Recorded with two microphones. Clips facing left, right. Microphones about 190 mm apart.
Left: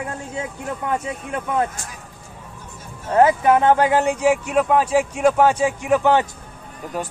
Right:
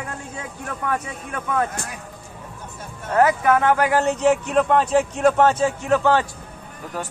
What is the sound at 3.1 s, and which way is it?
Speech, 25° left (ahead or behind).